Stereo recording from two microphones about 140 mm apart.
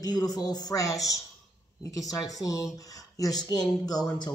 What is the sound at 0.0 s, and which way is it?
Speech, 25° left (ahead or behind).